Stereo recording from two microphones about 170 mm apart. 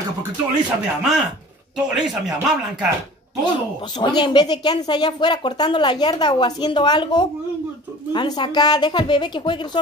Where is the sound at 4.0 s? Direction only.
30° left (ahead or behind).